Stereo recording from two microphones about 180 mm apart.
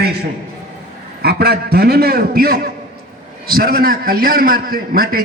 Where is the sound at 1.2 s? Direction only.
60° right (ahead or behind).